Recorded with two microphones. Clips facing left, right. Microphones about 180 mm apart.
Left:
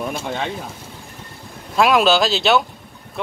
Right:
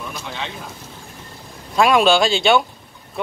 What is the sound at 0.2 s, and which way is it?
Speech, 50° left (ahead or behind).